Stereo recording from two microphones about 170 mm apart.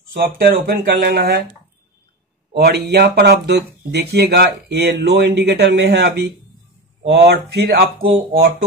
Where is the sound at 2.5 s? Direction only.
75° right (ahead or behind).